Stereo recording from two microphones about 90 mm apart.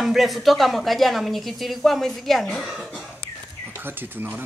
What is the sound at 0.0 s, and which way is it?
A woman's voice, 5° right (ahead or behind).